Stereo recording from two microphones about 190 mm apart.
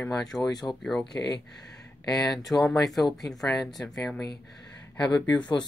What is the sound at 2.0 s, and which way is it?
Speech, 20° left (ahead or behind).